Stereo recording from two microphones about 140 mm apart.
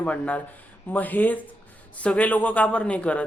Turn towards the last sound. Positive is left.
turn(degrees=10)  # may be behind; listen again after turning